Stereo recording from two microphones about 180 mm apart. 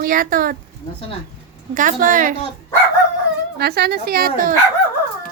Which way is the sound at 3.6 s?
65° right (ahead or behind).